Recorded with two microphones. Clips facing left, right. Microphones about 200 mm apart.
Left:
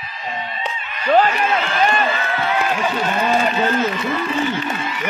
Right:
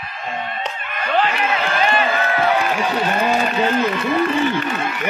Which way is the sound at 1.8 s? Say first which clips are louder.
Left 1 dB; 45° left (ahead or behind).